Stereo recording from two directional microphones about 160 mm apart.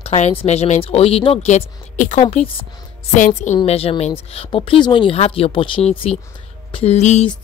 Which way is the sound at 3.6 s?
35° left (ahead or behind).